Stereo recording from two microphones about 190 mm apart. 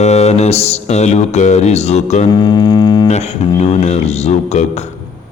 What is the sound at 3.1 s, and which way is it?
Music, 35° left (ahead or behind).